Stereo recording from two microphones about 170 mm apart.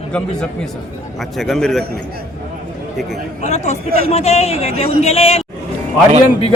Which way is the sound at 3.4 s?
40° left (ahead or behind).